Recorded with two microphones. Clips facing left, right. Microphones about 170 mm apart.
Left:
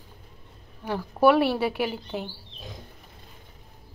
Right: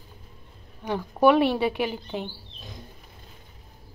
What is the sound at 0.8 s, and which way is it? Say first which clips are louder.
Speech: even; 5° left (ahead or behind).